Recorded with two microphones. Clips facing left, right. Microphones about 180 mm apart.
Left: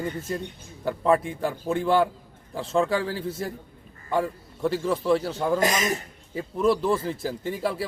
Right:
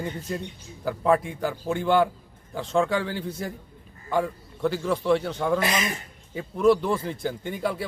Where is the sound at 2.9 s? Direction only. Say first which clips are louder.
Left 1 dB; 30° left (ahead or behind).